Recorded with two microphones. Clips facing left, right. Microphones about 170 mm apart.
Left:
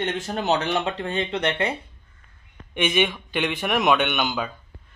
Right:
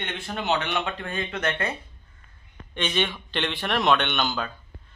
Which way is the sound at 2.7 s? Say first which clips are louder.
Left 4 dB; 10° left (ahead or behind).